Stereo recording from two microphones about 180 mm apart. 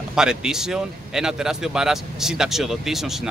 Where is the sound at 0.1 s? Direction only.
5° right (ahead or behind).